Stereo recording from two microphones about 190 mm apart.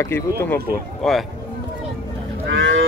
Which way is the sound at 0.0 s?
15° left (ahead or behind).